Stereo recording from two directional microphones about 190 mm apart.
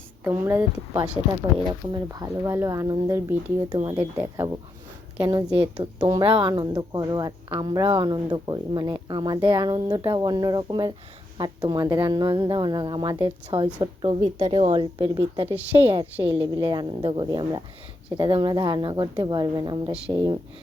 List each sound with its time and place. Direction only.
0.3 s speech: 15° right (ahead or behind)